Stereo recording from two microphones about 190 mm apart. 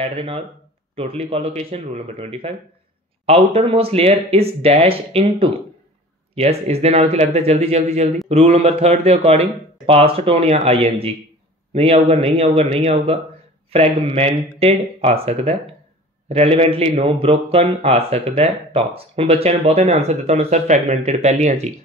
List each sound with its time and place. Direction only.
0.0 s a man's voice: 30° right (ahead or behind)